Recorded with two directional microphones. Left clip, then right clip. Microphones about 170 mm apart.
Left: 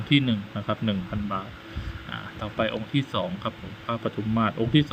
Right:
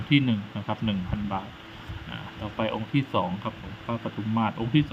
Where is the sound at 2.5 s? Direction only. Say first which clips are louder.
Left 1 dB; 10° left (ahead or behind).